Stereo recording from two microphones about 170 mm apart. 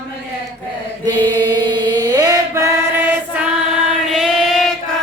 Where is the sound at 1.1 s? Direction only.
25° right (ahead or behind).